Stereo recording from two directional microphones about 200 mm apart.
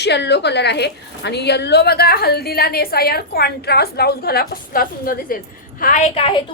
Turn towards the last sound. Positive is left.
turn(degrees=25)  # may be behind; listen again after turning